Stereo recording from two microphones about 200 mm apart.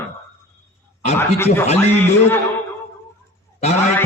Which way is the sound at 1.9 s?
10° left (ahead or behind).